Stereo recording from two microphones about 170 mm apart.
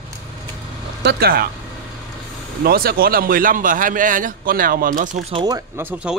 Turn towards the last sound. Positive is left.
turn(degrees=-10)  # may be behind; listen again after turning